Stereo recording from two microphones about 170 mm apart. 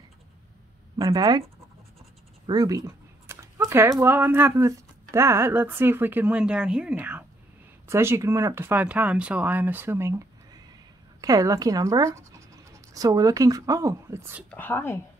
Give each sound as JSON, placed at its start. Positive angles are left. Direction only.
{"t": 0.9, "sound": "speech", "side_deg": -20}
{"t": 2.4, "sound": "a sound", "side_deg": -20}
{"t": 4.0, "sound": "speech", "side_deg": -10}
{"t": 14.5, "sound": "speech", "side_deg": 10}